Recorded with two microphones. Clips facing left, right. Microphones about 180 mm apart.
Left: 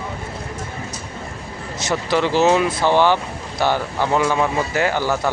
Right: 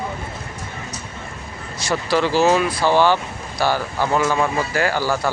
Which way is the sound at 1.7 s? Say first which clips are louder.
Even; 20° left (ahead or behind).